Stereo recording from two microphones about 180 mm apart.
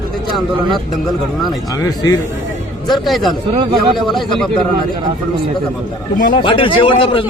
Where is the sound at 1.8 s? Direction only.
20° left (ahead or behind).